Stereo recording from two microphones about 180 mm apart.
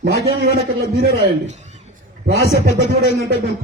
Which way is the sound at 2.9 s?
60° right (ahead or behind).